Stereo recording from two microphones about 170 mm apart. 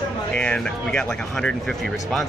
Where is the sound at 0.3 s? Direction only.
5° left (ahead or behind).